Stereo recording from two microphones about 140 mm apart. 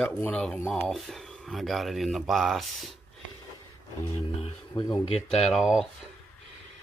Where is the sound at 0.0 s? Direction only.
10° left (ahead or behind).